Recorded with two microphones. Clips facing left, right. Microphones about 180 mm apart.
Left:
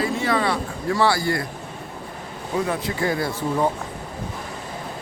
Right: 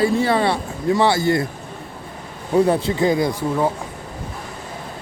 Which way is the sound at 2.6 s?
30° right (ahead or behind).